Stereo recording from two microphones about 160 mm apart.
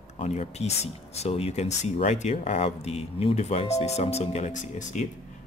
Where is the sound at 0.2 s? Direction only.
40° left (ahead or behind).